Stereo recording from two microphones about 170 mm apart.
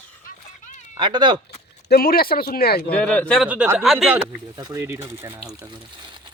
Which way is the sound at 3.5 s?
10° right (ahead or behind).